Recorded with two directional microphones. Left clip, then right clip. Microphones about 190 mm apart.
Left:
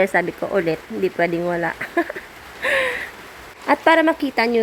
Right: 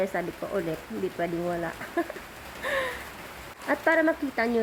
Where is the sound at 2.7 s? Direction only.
20° left (ahead or behind).